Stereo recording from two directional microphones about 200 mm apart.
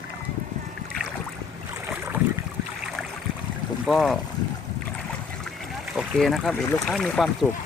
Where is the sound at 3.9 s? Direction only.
Centre (ahead or behind).